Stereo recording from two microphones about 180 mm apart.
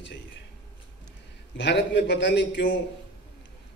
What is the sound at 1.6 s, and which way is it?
A man's voice, 75° left (ahead or behind).